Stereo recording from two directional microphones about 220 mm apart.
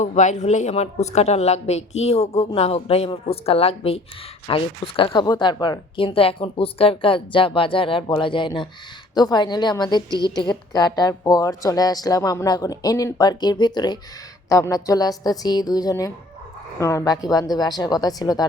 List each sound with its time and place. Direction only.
0.0 s a woman's voice: 35° left (ahead or behind); by 18.4 s 15° left (ahead or behind)